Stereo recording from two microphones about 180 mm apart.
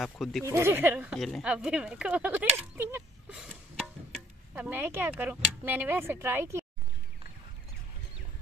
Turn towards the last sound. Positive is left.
turn(degrees=-15)  # may be behind; listen again after turning